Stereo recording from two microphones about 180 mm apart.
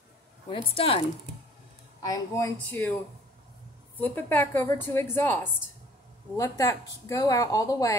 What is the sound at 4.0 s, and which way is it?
A woman's voice, 10° left (ahead or behind).